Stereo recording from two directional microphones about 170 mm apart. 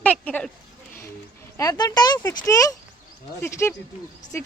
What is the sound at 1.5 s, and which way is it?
Speech, 20° left (ahead or behind).